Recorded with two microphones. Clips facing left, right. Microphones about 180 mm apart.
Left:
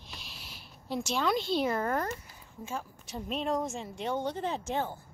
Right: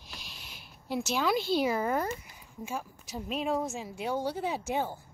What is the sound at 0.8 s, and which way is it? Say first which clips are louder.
A woman's voice: right 1 dB; 5° right (ahead or behind).